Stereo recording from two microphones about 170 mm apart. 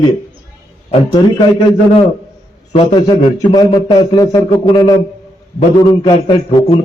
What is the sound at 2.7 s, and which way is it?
Speech, 25° left (ahead or behind).